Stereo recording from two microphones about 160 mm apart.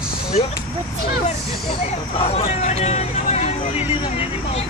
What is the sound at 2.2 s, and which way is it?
Speech, 40° left (ahead or behind).